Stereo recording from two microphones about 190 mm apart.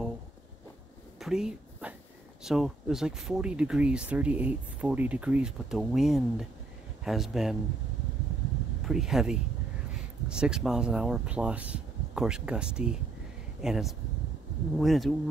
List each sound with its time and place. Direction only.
1.2 s a sound: 5° right (ahead or behind)
2.4 s speech: centre (ahead or behind)
8.8 s speech: centre (ahead or behind)